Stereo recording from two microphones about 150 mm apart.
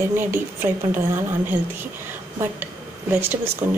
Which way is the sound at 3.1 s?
15° right (ahead or behind).